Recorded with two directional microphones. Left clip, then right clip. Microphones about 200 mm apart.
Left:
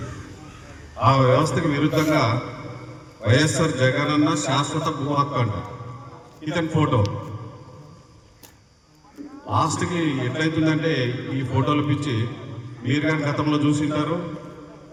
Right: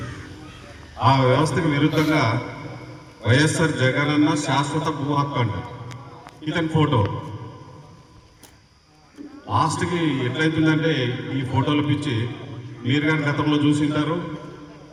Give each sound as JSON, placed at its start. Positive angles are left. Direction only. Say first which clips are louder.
{"t": 1.0, "sound": "a man's voice", "louder": "even", "side_deg": -35}
{"t": 9.6, "sound": "a man's voice", "louder": "right 1 dB", "side_deg": -35}